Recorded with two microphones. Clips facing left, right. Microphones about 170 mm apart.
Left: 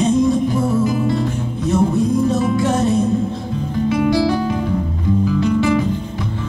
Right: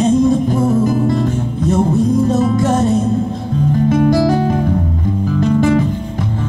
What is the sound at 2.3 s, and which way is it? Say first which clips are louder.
Music: right 3 dB; 45° right (ahead or behind).